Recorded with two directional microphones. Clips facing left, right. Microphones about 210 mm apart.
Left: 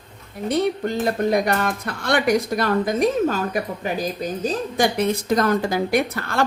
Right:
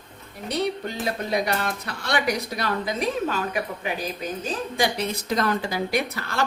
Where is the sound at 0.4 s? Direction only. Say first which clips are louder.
Left 5 dB; 50° left (ahead or behind).